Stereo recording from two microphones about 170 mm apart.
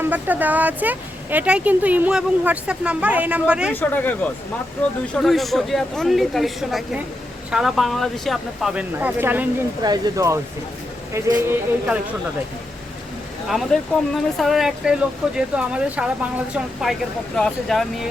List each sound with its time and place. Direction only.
0.0 s speech: 10° right (ahead or behind)
3.8 s speech: 10° left (ahead or behind); by 9.5 s 10° right (ahead or behind)
9.8 s speech: 20° right (ahead or behind)
13.5 s speech: centre (ahead or behind)
17.3 s speech: centre (ahead or behind)